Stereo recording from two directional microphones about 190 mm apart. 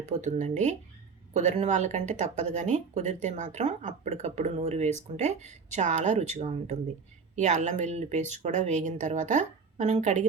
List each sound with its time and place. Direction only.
0.1 s speech: 40° right (ahead or behind)